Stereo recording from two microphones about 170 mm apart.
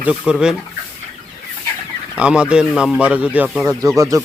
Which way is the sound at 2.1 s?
5° right (ahead or behind).